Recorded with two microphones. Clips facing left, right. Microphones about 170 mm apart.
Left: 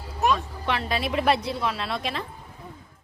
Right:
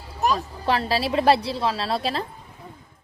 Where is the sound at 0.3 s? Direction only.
35° right (ahead or behind).